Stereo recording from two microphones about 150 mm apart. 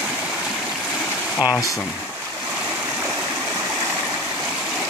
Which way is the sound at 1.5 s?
20° left (ahead or behind).